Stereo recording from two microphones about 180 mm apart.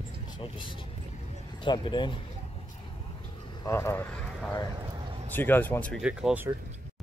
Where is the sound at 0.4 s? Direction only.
25° left (ahead or behind).